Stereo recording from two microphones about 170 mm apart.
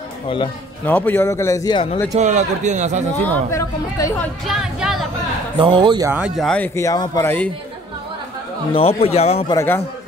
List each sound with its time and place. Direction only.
0.8 s speech: 10° left (ahead or behind)
2.1 s a man's voice: 45° right (ahead or behind)
3.3 s speech: 15° left (ahead or behind)
4.5 s speech: centre (ahead or behind)
5.6 s speech: 25° right (ahead or behind)
6.0 s speech: 5° right (ahead or behind); by 7.4 s 15° left (ahead or behind)
8.7 s speech: 35° left (ahead or behind)
9.5 s speech: 15° left (ahead or behind)